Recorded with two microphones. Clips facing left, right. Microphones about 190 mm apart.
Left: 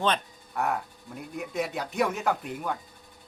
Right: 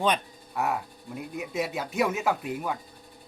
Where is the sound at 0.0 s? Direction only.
10° right (ahead or behind).